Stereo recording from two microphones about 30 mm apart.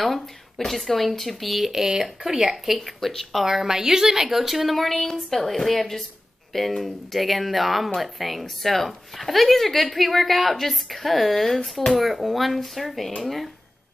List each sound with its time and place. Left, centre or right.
0.7 s speech: centre
1.7 s speech: centre
4.7 s a woman's voice: centre